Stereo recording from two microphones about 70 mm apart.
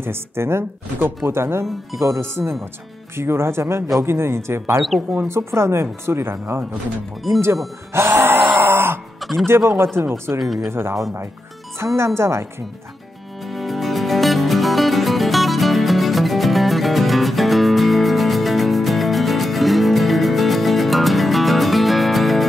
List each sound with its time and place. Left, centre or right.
0.0 s speech: right
2.4 s speech: right
3.2 s speech: right
7.9 s music: right
9.2 s music: centre
9.5 s speech: right
10.4 s speech: centre
10.7 s speech: right
13.5 s music: centre